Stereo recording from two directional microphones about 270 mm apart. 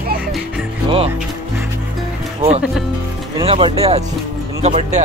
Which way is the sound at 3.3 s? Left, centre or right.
Centre.